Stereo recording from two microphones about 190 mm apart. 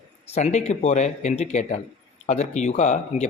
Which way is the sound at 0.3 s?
35° left (ahead or behind).